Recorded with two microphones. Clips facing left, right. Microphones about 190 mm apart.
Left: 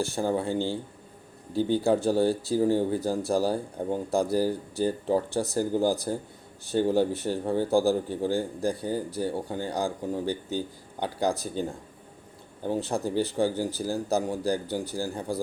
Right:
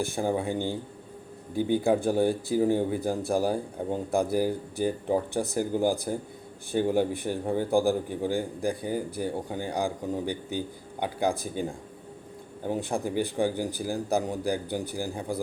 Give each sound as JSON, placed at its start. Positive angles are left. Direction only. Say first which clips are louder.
{"t": 0.0, "sound": "speech", "louder": "left 1 dB", "side_deg": -15}
{"t": 12.6, "sound": "speech", "louder": "left 1 dB", "side_deg": -15}